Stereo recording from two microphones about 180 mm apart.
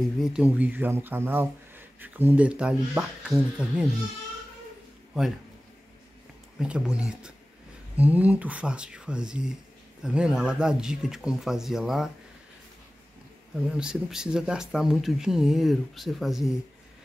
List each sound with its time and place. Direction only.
0.2 s speech: 5° right (ahead or behind)
6.6 s speech: 5° right (ahead or behind)
13.7 s speech: 5° right (ahead or behind)